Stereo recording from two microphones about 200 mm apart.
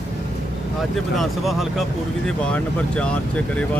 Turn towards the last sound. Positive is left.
turn(degrees=5)  # may be behind; listen again after turning